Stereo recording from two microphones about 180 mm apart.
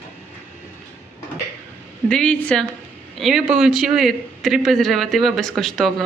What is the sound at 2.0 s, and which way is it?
A man's voice, 5° left (ahead or behind).